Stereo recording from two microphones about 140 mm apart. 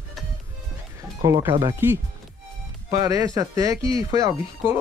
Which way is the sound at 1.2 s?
25° right (ahead or behind).